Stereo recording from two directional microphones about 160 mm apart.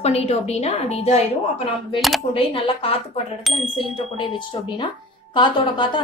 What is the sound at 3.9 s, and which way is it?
Speech, 35° left (ahead or behind).